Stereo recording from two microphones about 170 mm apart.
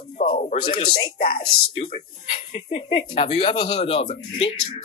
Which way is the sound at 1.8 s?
50° left (ahead or behind).